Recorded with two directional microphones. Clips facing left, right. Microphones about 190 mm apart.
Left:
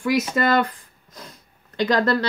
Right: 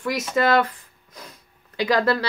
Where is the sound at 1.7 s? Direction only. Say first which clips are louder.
Left 1 dB; 5° right (ahead or behind).